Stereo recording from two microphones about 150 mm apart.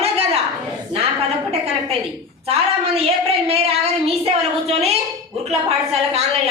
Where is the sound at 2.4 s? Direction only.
40° right (ahead or behind).